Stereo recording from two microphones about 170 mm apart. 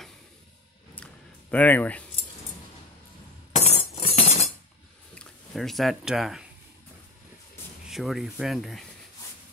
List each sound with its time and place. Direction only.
1.5 s speech: 10° left (ahead or behind)
3.5 s chink: 40° left (ahead or behind)
5.1 s speech: 5° left (ahead or behind)
7.9 s speech: centre (ahead or behind)